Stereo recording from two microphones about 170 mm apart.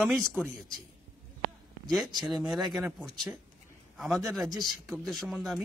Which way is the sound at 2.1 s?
25° right (ahead or behind).